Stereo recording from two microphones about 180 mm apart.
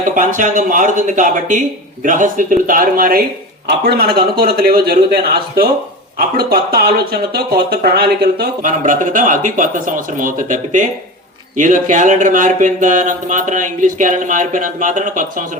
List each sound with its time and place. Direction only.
0.1 s speech: 45° right (ahead or behind)
8.8 s speech: 45° right (ahead or behind)